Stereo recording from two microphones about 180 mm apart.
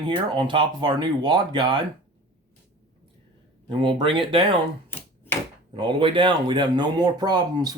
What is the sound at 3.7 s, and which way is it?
Speech, 25° right (ahead or behind).